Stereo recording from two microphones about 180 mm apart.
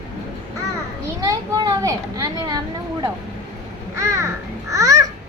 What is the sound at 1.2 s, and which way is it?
A child's voice, 20° right (ahead or behind).